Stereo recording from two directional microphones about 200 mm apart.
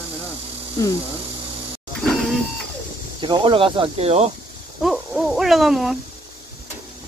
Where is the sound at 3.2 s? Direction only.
25° right (ahead or behind).